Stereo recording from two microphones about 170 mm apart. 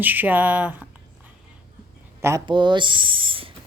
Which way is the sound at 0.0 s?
10° right (ahead or behind).